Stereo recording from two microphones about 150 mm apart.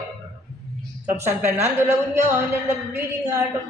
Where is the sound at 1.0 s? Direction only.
15° right (ahead or behind).